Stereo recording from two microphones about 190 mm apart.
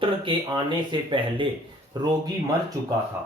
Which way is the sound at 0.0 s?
25° right (ahead or behind).